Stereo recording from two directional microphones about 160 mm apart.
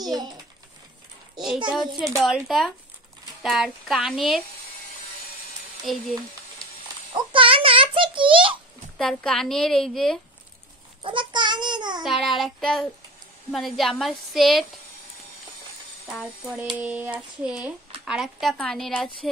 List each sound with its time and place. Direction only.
0.0 s a child's voice: 25° right (ahead or behind)
1.7 s a woman's voice: 5° right (ahead or behind)
5.8 s speech: centre (ahead or behind)
7.2 s a sound: 35° right (ahead or behind)
8.9 s a woman's voice: 5° left (ahead or behind)
11.0 s a child's voice: 30° right (ahead or behind)
12.0 s a woman's voice: centre (ahead or behind)
16.2 s a woman's voice: centre (ahead or behind)